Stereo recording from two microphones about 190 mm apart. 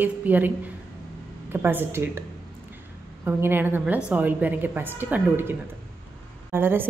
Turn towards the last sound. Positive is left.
turn(degrees=-10)  # may be behind; listen again after turning